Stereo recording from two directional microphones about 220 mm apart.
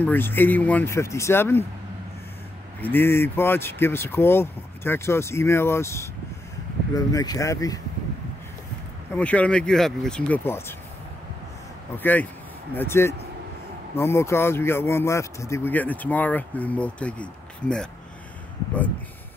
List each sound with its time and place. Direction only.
0.0 s speech: 10° left (ahead or behind)
2.8 s speech: 10° left (ahead or behind)
9.1 s speech: 5° left (ahead or behind)
12.0 s speech: 10° left (ahead or behind)